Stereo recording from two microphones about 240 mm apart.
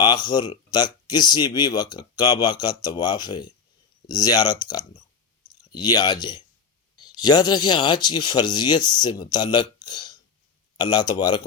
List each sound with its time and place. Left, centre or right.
0.0 s speech: centre